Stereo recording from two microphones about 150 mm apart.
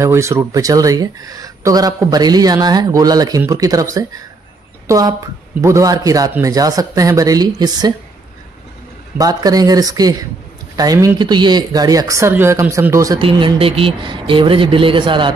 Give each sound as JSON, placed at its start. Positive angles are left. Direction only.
{"t": 0.0, "sound": "speech", "side_deg": -20}
{"t": 9.2, "sound": "speech", "side_deg": -25}
{"t": 13.2, "sound": "speech", "side_deg": -35}